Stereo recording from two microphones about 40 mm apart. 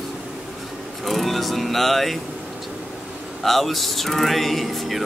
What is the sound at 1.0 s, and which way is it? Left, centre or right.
Speech, centre.